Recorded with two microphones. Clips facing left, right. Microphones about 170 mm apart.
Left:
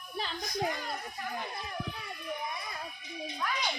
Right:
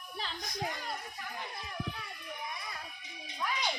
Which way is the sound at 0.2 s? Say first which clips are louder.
Left 5 dB; 5° left (ahead or behind).